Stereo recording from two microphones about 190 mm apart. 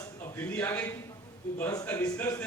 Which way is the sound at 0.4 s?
10° left (ahead or behind).